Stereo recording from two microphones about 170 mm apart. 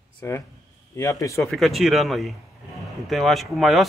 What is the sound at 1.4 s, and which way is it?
Speech, centre (ahead or behind).